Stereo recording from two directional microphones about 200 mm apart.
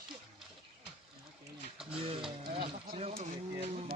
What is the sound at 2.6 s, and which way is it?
Speech, 30° right (ahead or behind).